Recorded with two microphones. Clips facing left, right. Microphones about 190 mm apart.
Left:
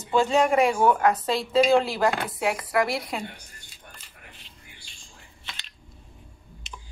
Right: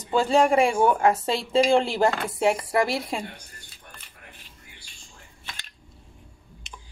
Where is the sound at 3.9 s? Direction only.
55° right (ahead or behind).